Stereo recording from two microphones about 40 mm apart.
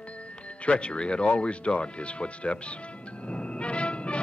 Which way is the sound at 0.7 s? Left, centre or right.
Left.